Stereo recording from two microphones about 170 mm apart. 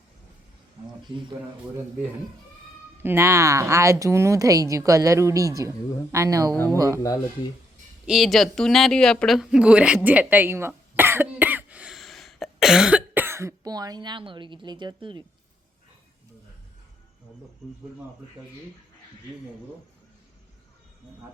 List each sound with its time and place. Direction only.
3.0 s speech: 15° right (ahead or behind)
8.0 s speech: centre (ahead or behind); by 15.2 s 25° right (ahead or behind)